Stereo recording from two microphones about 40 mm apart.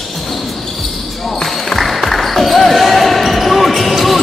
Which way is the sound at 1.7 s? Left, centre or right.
Centre.